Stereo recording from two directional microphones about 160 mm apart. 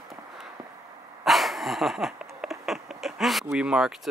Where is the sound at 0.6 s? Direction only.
20° right (ahead or behind).